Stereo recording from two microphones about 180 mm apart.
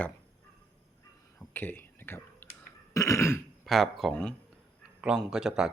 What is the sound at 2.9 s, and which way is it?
Throat clearing, 20° left (ahead or behind).